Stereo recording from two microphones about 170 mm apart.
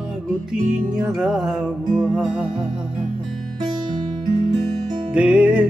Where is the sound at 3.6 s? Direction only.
25° right (ahead or behind).